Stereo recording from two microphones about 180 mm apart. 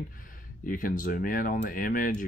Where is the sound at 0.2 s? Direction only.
50° left (ahead or behind).